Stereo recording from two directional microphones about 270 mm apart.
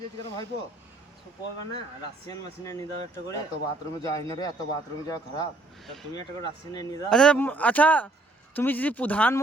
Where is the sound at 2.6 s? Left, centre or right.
Centre.